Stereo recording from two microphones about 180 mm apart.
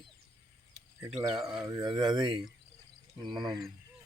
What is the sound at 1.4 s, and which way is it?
Speech, 5° right (ahead or behind).